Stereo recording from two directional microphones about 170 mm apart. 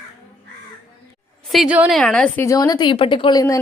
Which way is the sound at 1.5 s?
5° right (ahead or behind).